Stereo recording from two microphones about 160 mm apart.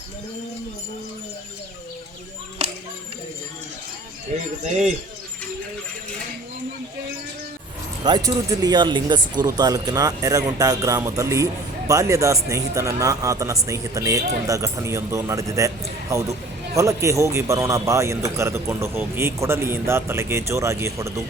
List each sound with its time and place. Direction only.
8.0 s a man's voice: 25° right (ahead or behind)